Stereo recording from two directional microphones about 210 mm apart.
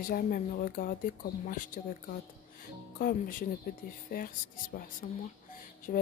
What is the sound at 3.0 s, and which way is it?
A woman's voice, 40° left (ahead or behind).